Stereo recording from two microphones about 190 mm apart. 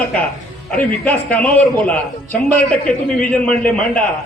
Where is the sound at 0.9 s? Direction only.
10° left (ahead or behind).